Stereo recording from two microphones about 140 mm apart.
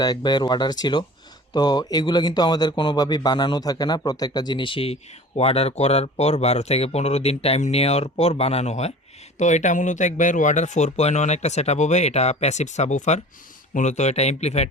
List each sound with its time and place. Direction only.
0.0 s speech: 30° left (ahead or behind); by 14.7 s 50° left (ahead or behind)